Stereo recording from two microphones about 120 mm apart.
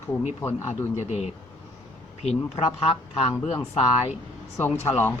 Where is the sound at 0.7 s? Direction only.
75° left (ahead or behind).